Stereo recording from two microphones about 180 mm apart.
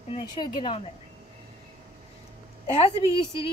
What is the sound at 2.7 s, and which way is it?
Speech, 30° left (ahead or behind).